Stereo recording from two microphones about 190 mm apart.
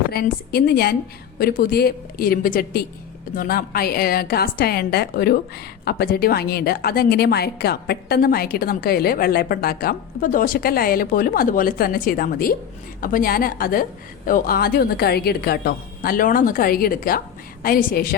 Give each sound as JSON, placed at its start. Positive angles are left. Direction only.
{"t": 0.1, "sound": "a woman's voice", "side_deg": 55}